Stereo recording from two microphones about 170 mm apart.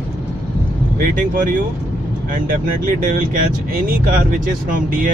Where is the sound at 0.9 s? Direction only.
55° right (ahead or behind).